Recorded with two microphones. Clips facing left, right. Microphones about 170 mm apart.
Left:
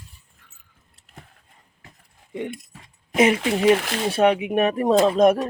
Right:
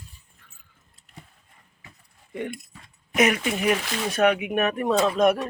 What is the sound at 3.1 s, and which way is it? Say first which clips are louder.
Speech: left 4 dB; 30° left (ahead or behind).